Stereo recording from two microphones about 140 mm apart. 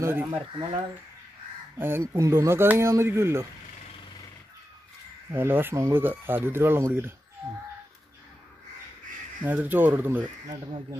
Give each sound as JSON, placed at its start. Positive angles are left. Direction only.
{"t": 0.0, "sound": "speech", "side_deg": -15}
{"t": 1.8, "sound": "speech", "side_deg": -15}
{"t": 5.3, "sound": "speech", "side_deg": -15}
{"t": 9.4, "sound": "speech", "side_deg": -10}